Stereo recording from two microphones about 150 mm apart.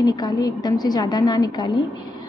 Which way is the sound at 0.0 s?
25° left (ahead or behind).